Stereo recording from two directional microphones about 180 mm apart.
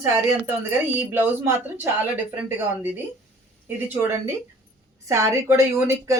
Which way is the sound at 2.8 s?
10° right (ahead or behind).